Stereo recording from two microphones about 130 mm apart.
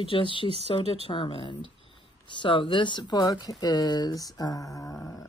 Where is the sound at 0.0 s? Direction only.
40° left (ahead or behind).